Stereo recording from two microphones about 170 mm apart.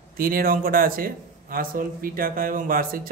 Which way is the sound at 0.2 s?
60° right (ahead or behind).